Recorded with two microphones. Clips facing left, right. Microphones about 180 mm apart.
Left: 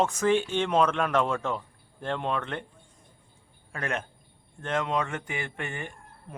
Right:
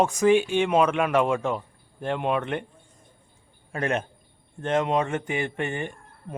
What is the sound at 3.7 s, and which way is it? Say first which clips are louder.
Speech: right 6 dB; 25° right (ahead or behind).